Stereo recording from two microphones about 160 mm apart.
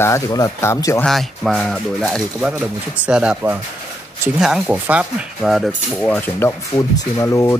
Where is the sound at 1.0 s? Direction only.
Centre (ahead or behind).